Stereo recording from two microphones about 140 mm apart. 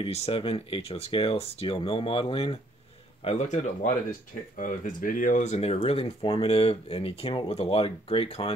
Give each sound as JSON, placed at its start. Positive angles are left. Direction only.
{"t": 0.0, "sound": "speech", "side_deg": 45}
{"t": 4.6, "sound": "speech", "side_deg": 75}